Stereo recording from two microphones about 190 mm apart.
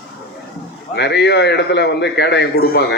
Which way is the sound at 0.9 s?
65° left (ahead or behind).